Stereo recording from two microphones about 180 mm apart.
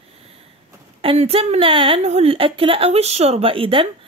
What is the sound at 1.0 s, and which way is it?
A woman's voice, 30° right (ahead or behind).